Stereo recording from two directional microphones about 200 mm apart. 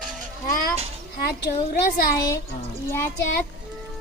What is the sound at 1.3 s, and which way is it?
Speech, 50° left (ahead or behind).